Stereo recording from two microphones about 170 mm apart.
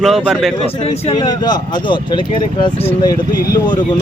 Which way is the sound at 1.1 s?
25° left (ahead or behind).